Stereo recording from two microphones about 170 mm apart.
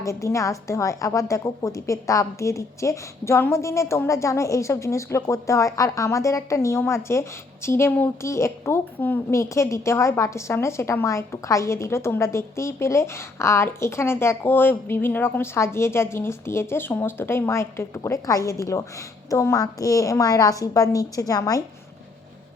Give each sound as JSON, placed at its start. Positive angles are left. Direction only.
{"t": 0.0, "sound": "a woman's voice", "side_deg": 15}